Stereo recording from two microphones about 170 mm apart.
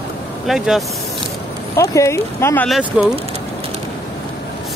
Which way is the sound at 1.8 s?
15° left (ahead or behind).